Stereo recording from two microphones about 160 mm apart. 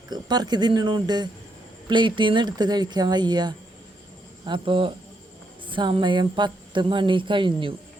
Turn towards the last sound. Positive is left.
turn(degrees=-30)  # may be behind; listen again after turning